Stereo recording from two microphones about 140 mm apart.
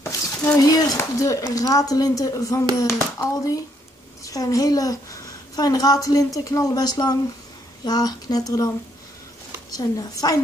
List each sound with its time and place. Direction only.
0.0 s a sound: 15° left (ahead or behind)
0.7 s a woman's voice: 25° left (ahead or behind)
9.8 s speech: 25° left (ahead or behind)